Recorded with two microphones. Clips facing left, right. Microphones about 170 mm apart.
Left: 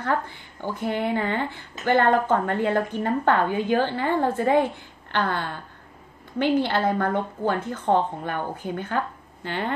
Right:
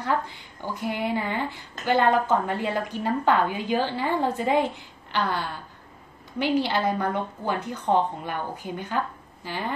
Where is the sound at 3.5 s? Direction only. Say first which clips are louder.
Left 3 dB; 55° left (ahead or behind).